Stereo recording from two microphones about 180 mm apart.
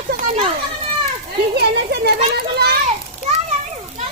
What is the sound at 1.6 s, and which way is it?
Speech, 65° right (ahead or behind).